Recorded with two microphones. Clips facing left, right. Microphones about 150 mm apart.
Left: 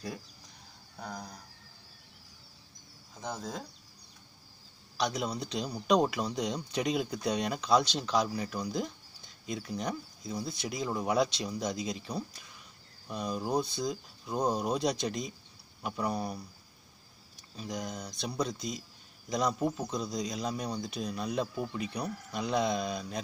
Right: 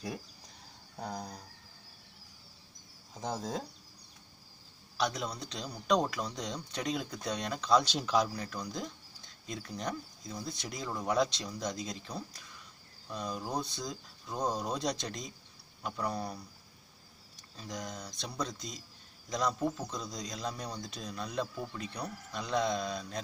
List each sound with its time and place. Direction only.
0.9 s speech: 30° right (ahead or behind)
3.2 s speech: 35° right (ahead or behind)
4.9 s speech: centre (ahead or behind)
5.2 s speech: 10° left (ahead or behind)
7.8 s speech: 5° right (ahead or behind)
8.5 s speech: 10° left (ahead or behind)
17.6 s speech: 10° left (ahead or behind)